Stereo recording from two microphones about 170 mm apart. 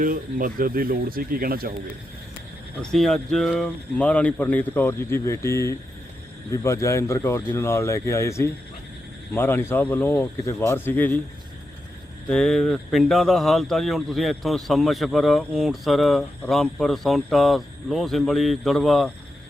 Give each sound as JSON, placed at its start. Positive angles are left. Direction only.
{"t": 0.0, "sound": "speech", "side_deg": -55}
{"t": 2.8, "sound": "speech", "side_deg": 5}
{"t": 12.3, "sound": "speech", "side_deg": 5}